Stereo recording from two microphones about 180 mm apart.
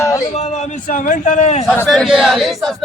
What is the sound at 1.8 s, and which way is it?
Speech, centre (ahead or behind).